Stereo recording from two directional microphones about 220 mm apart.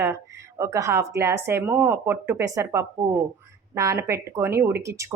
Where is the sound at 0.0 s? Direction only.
10° right (ahead or behind).